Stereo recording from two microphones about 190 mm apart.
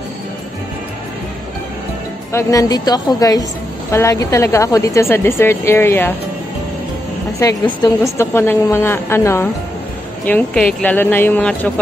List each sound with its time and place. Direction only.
2.3 s a woman's voice: 20° left (ahead or behind)
7.3 s a woman's voice: 15° left (ahead or behind)